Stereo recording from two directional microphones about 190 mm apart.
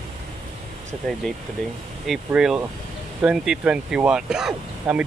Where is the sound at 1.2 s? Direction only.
Centre (ahead or behind).